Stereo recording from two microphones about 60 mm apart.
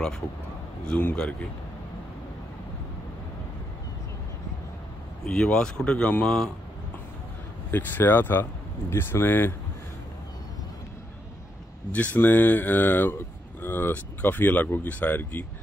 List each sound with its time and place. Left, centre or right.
0.8 s a man's voice: left
5.2 s speech: centre
7.7 s speech: left
11.9 s speech: left